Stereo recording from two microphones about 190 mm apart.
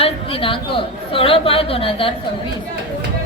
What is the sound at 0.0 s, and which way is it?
A woman's voice, 30° left (ahead or behind).